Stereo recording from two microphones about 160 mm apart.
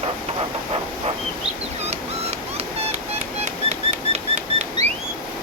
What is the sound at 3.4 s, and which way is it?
Bird flight, 40° right (ahead or behind).